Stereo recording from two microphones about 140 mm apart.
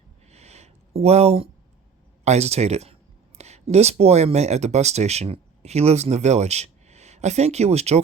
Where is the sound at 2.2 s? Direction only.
50° right (ahead or behind).